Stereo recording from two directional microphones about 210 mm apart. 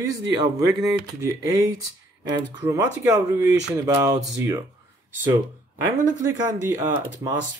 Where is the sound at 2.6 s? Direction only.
15° right (ahead or behind).